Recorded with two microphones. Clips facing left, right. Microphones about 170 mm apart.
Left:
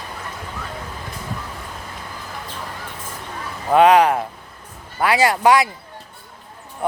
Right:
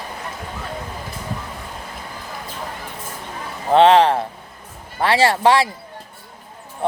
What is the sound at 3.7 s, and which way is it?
Speech, 30° right (ahead or behind).